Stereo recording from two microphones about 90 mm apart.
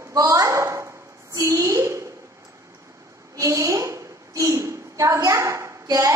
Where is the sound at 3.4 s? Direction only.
35° right (ahead or behind).